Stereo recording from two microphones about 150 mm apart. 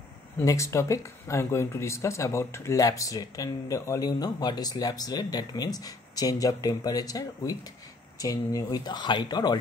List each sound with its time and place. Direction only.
0.4 s speech: 20° left (ahead or behind)